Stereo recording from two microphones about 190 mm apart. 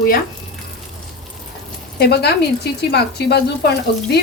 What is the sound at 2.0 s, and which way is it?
Speech, 60° left (ahead or behind).